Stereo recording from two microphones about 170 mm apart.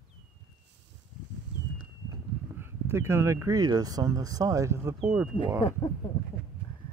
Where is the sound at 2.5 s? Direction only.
15° right (ahead or behind).